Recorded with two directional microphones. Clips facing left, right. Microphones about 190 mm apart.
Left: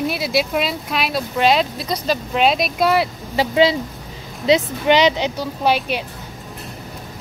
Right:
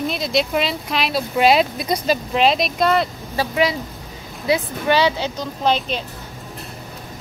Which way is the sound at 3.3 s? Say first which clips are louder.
Left 4 dB; 25° left (ahead or behind).